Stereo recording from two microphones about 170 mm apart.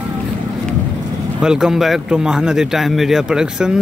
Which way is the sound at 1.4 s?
5° right (ahead or behind).